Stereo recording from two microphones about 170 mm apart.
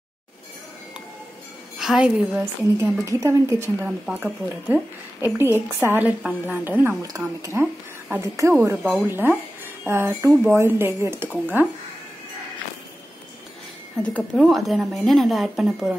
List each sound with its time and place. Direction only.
1.8 s speech: 5° right (ahead or behind)
3.1 s speech: 15° right (ahead or behind)
14.3 s speech: centre (ahead or behind)